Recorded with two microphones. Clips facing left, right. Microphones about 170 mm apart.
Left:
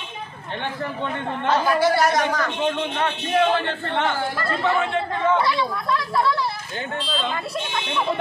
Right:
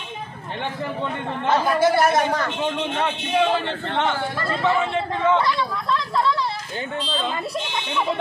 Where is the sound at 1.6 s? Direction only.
20° right (ahead or behind).